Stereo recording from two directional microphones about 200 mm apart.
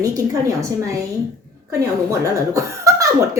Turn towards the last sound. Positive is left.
turn(degrees=-15)  # may be behind; listen again after turning